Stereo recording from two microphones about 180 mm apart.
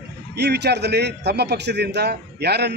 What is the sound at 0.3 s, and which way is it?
A man's voice, 70° right (ahead or behind).